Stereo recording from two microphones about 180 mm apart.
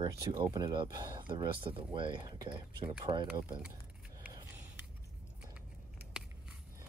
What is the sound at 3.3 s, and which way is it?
Speech, 5° right (ahead or behind).